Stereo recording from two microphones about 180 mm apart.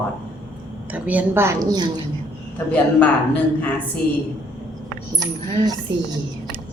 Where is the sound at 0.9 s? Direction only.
10° right (ahead or behind).